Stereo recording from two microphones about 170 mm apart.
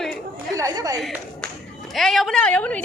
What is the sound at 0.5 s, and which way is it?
Speech, 20° right (ahead or behind).